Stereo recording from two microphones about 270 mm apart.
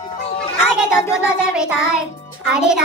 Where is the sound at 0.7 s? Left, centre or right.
Centre.